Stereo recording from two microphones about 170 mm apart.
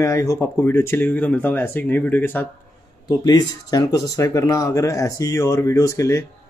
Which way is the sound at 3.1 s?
25° left (ahead or behind).